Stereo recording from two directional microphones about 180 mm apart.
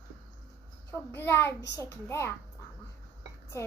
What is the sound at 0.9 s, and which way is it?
A woman's voice, 15° left (ahead or behind).